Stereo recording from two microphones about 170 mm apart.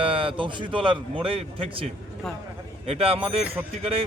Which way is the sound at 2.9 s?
35° right (ahead or behind).